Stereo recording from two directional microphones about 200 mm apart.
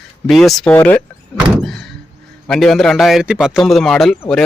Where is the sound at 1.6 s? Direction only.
Centre (ahead or behind).